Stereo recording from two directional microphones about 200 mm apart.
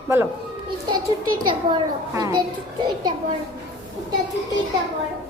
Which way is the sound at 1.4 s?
20° right (ahead or behind).